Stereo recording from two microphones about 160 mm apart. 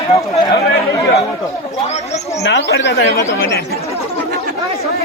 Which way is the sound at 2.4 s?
90° left.